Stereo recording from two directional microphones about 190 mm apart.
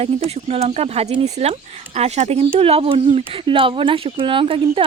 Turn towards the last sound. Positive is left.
turn(degrees=-25)  # may be behind; listen again after turning